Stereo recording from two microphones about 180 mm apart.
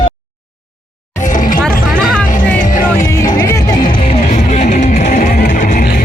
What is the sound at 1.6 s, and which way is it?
Music, 5° left (ahead or behind).